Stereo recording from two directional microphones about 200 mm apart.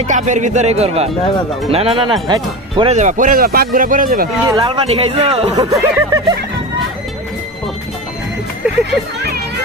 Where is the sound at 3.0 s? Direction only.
40° right (ahead or behind).